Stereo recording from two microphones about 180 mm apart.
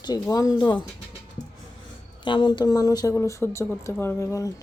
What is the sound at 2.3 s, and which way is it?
Speech, 25° left (ahead or behind).